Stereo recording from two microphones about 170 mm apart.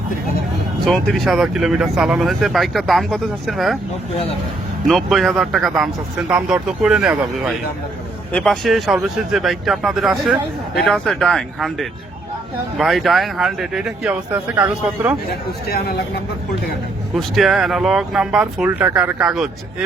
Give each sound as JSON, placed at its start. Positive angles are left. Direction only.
{"t": 0.9, "sound": "speech", "side_deg": 5}
{"t": 4.9, "sound": "speech", "side_deg": 0}
{"t": 8.3, "sound": "speech", "side_deg": 5}
{"t": 15.3, "sound": "speech", "side_deg": 70}
{"t": 17.2, "sound": "speech", "side_deg": 0}